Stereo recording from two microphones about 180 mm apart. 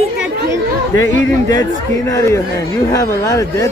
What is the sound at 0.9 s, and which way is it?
Speech, 20° left (ahead or behind).